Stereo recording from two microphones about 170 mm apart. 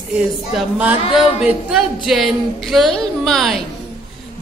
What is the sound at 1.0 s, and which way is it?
Speech, 35° left (ahead or behind).